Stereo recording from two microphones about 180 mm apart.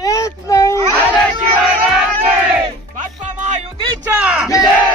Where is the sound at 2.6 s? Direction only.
40° right (ahead or behind).